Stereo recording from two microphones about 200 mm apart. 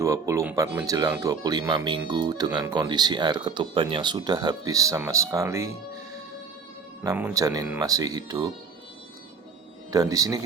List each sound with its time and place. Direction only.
0.0 s speech: 15° right (ahead or behind)
7.0 s speech: 10° right (ahead or behind)
9.9 s speech: 15° right (ahead or behind)